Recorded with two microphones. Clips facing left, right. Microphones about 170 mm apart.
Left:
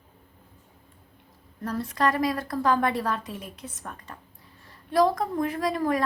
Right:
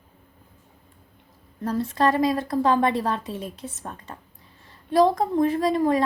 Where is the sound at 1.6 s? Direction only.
25° right (ahead or behind).